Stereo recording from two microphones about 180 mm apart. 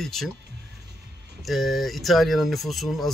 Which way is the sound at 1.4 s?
Centre (ahead or behind).